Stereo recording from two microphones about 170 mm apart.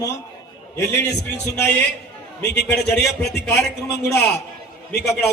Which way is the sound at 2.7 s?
Centre (ahead or behind).